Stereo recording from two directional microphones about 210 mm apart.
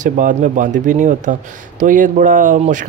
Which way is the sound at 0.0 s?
35° right (ahead or behind).